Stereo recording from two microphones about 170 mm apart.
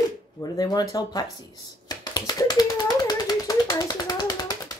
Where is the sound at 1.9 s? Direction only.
25° left (ahead or behind).